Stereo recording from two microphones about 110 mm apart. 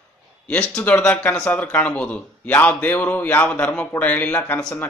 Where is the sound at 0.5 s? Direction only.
15° left (ahead or behind).